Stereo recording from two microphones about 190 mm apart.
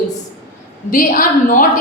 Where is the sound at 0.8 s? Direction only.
50° left (ahead or behind).